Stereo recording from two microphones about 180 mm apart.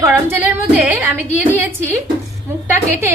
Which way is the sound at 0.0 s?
10° right (ahead or behind).